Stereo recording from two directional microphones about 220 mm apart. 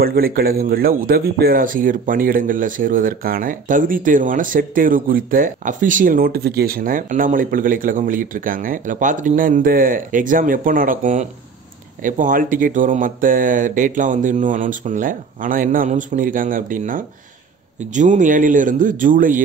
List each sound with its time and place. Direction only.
0.0 s speech: 45° right (ahead or behind)